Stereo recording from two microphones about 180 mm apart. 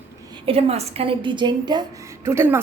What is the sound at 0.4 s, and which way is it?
A woman's voice, 35° right (ahead or behind).